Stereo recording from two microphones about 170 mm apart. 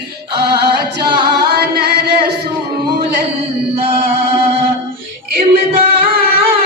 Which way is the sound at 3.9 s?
30° right (ahead or behind).